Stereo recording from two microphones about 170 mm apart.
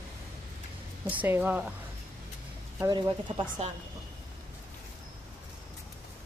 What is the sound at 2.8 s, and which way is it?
Speech, 25° right (ahead or behind).